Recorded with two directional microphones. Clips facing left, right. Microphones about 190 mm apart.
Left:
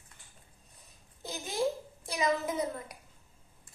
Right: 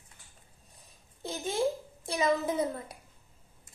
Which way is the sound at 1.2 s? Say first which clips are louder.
Right 5 dB; 30° right (ahead or behind).